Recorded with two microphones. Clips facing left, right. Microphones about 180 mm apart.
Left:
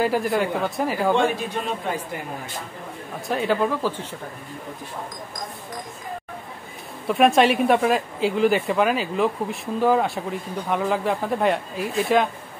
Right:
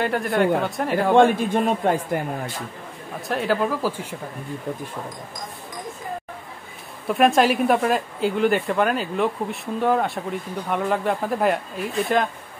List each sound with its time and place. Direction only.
0.0 s speech: centre (ahead or behind)
1.1 s a man's voice: 50° right (ahead or behind)
3.2 s speech: centre (ahead or behind)
7.1 s speech: centre (ahead or behind)